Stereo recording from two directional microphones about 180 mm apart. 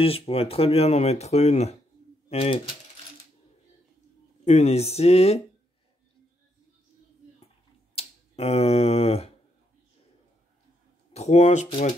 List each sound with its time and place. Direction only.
0.0 s speech: 35° left (ahead or behind)
4.5 s speech: 35° left (ahead or behind)
7.9 s speech: 35° left (ahead or behind)
11.1 s speech: 40° left (ahead or behind)